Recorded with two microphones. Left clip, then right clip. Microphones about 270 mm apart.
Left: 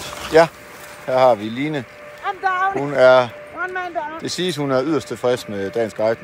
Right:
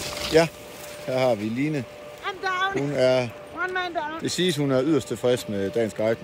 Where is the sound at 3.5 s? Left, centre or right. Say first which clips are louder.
Left 2 dB; centre.